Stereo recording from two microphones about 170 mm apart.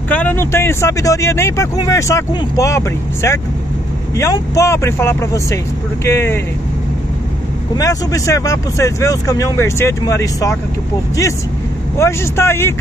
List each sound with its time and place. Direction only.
0.1 s speech: 10° left (ahead or behind)
7.7 s speech: 20° left (ahead or behind)
12.0 s speech: 15° left (ahead or behind)